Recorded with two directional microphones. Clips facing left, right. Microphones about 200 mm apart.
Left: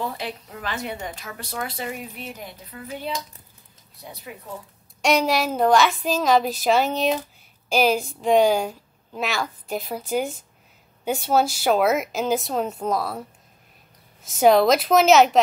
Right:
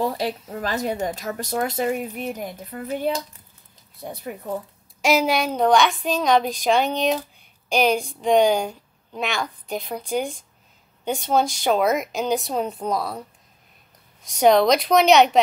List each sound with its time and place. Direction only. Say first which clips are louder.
0.0 s speech: right 6 dB; 40° right (ahead or behind)
3.9 s speech: right 7 dB; 50° right (ahead or behind)
5.0 s a woman's voice: right 1 dB; centre (ahead or behind)
14.2 s a woman's voice: even; 5° left (ahead or behind)